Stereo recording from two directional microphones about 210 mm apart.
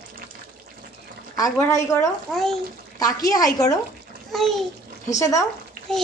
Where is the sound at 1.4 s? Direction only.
15° left (ahead or behind).